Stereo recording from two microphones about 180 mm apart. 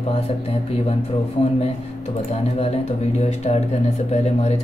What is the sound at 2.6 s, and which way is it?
Speech, 35° left (ahead or behind).